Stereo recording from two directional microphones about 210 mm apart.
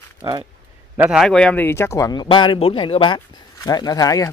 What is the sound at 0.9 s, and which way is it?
Speech, 5° right (ahead or behind).